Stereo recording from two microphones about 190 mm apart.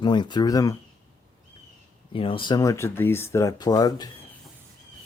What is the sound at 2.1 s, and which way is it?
Speech, 30° left (ahead or behind).